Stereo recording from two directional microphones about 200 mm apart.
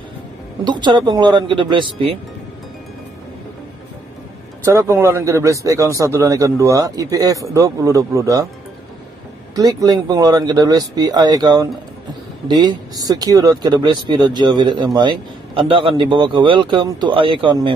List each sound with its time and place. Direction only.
0.7 s speech: 20° right (ahead or behind)
4.7 s speech: 15° right (ahead or behind)
9.6 s speech: 15° right (ahead or behind)